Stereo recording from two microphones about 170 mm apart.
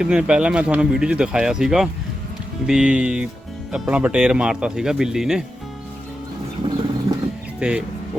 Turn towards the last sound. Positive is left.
turn(degrees=-5)  # may be behind; listen again after turning